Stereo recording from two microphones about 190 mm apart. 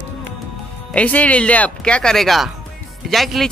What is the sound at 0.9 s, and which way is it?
Speech, 5° left (ahead or behind).